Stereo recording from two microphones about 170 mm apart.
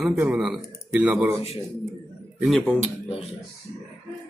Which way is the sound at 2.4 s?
Centre (ahead or behind).